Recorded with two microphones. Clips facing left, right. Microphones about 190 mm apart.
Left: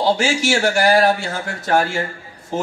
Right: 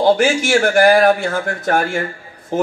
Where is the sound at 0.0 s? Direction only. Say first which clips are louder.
Right 4 dB; 55° right (ahead or behind).